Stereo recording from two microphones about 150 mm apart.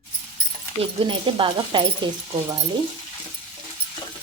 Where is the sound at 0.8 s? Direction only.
35° right (ahead or behind).